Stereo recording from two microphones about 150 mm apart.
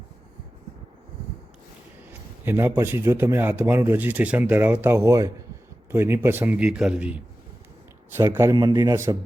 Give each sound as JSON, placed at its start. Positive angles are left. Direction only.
{"t": 2.4, "sound": "a man's voice", "side_deg": -15}